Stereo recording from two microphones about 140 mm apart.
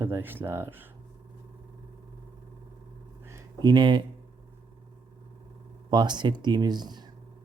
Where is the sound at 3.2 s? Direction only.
25° right (ahead or behind).